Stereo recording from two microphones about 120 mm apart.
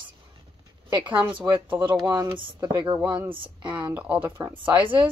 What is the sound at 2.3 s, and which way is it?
Speech, 45° right (ahead or behind).